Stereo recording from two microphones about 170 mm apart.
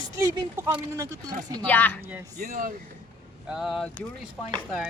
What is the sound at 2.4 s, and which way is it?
Speech, 55° right (ahead or behind).